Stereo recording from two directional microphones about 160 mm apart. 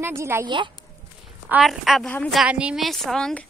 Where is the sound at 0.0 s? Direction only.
15° right (ahead or behind).